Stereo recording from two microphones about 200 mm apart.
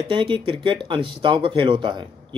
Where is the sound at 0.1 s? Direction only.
25° right (ahead or behind).